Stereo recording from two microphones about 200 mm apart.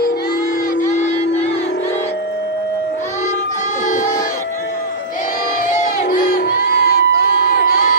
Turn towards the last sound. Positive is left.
turn(degrees=45)  # may be behind; listen again after turning